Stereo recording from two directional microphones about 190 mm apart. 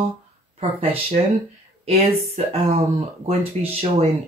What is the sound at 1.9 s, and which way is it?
Speech, 30° right (ahead or behind).